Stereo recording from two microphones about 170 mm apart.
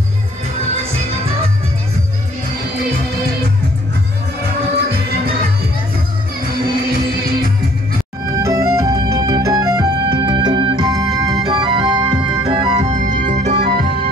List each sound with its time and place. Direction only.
4.4 s music: 70° right (ahead or behind)
6.4 s music: 60° right (ahead or behind)
8.3 s music: 20° right (ahead or behind); by 13.8 s 60° right (ahead or behind)